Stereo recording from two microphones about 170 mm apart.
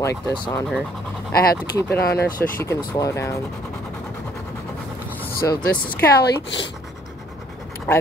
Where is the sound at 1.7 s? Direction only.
10° left (ahead or behind).